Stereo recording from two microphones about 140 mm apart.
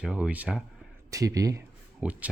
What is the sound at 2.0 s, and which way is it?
Speech, 10° right (ahead or behind).